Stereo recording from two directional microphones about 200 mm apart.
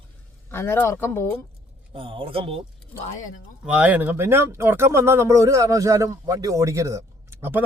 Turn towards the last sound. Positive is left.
turn(degrees=-10)  # may be behind; listen again after turning